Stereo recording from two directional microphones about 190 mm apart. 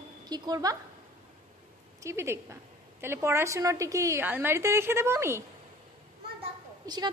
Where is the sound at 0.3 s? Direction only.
20° right (ahead or behind).